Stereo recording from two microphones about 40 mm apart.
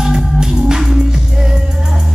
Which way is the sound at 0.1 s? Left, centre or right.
Centre.